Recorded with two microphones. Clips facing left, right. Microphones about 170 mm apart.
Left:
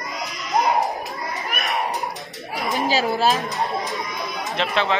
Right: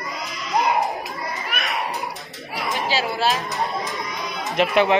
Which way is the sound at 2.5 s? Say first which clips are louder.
Left 2 dB; 45° left (ahead or behind).